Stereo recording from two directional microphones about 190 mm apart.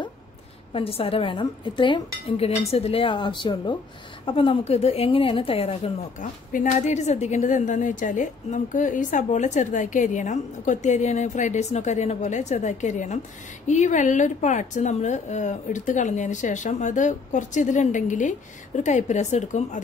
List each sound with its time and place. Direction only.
0.7 s a woman's voice: 30° left (ahead or behind)